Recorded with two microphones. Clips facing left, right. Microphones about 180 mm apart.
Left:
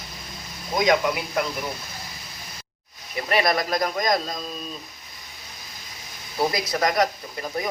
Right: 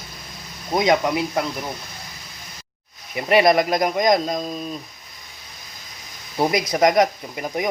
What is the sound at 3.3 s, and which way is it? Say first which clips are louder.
Speech: right 7 dB; 20° right (ahead or behind).